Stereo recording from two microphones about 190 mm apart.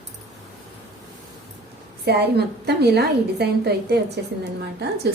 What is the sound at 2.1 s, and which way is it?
A woman's voice, 60° right (ahead or behind).